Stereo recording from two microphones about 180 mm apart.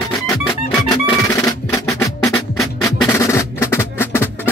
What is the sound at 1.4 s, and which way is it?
Music, 20° left (ahead or behind).